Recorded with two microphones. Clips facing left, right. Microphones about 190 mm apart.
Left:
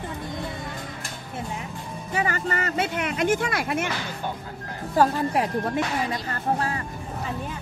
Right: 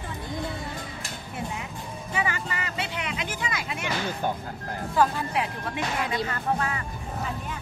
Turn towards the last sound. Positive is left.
turn(degrees=35)  # may be behind; listen again after turning